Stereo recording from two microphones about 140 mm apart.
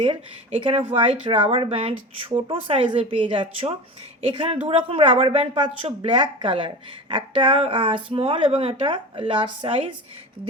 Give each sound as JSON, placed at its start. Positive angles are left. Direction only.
{"t": 0.9, "sound": "a woman's voice", "side_deg": -40}